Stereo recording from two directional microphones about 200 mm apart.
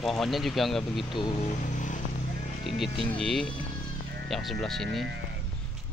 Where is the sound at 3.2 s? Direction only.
5° left (ahead or behind).